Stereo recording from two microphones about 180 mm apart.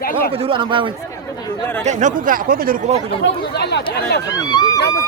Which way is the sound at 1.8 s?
45° right (ahead or behind).